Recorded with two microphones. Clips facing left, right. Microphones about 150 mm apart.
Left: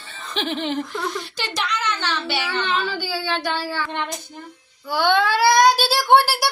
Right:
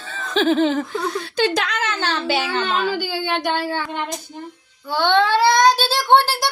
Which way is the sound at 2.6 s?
45° right (ahead or behind).